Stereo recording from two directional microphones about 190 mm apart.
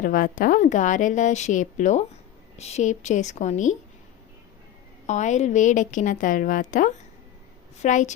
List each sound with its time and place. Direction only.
0.0 s a woman's voice: 45° left (ahead or behind)
5.0 s a woman's voice: 40° left (ahead or behind)